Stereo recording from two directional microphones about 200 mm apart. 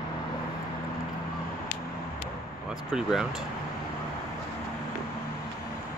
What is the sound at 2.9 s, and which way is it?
Speech, centre (ahead or behind).